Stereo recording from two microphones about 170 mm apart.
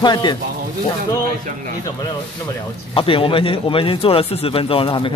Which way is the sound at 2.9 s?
30° left (ahead or behind).